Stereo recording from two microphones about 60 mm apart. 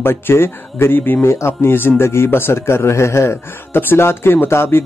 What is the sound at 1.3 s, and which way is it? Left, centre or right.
A man's voice, left.